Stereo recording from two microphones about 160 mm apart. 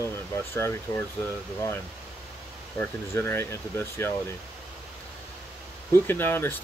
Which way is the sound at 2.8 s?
15° left (ahead or behind).